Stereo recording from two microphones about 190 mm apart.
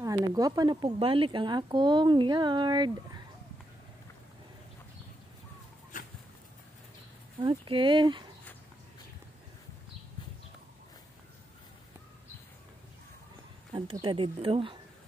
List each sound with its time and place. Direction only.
0.0 s speech: 20° right (ahead or behind)
5.9 s a sound: 45° left (ahead or behind)
7.4 s speech: 25° right (ahead or behind)
13.9 s speech: 25° right (ahead or behind)